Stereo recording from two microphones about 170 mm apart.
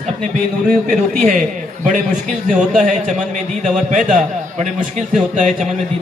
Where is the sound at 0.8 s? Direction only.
55° right (ahead or behind).